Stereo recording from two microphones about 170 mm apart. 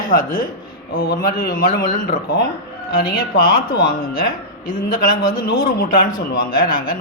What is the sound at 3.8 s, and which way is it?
Speech, 60° left (ahead or behind).